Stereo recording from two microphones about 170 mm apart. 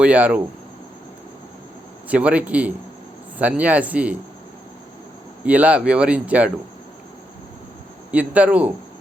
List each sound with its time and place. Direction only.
0.0 s speech: 10° right (ahead or behind)
2.0 s speech: 10° right (ahead or behind)
5.5 s speech: 10° right (ahead or behind)
8.1 s speech: 10° right (ahead or behind)